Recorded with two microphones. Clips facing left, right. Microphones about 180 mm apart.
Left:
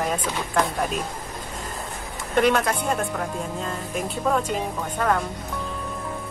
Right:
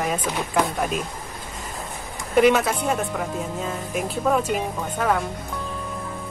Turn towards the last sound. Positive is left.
turn(degrees=-5)  # may be behind; listen again after turning